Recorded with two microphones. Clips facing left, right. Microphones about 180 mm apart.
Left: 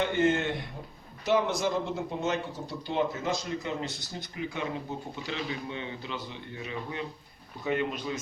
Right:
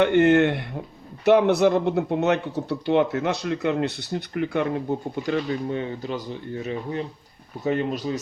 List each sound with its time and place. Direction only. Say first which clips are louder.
0.0 s speech: right 9 dB; 65° right (ahead or behind); by 8.2 s 35° right (ahead or behind)